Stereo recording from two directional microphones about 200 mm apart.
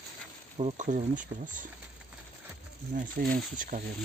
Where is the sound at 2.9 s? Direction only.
40° right (ahead or behind).